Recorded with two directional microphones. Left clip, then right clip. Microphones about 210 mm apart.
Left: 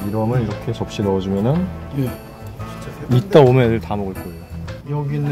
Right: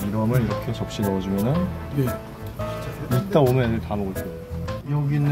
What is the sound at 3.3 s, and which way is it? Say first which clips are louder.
Speech: left 8 dB; 55° left (ahead or behind).